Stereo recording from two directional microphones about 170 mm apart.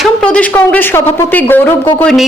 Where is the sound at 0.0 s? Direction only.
5° left (ahead or behind).